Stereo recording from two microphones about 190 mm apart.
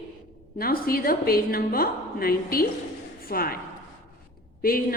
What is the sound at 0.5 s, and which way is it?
A woman's voice, 50° left (ahead or behind).